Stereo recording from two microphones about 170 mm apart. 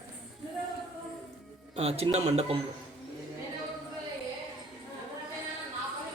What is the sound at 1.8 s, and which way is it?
Speech, 35° right (ahead or behind).